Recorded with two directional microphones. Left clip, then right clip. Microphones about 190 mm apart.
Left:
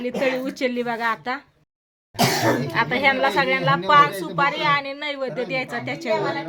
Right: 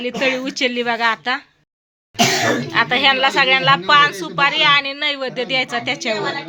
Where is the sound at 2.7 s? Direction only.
5° right (ahead or behind).